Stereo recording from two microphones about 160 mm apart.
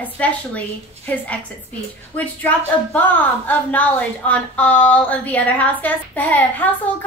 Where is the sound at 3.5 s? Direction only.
10° left (ahead or behind).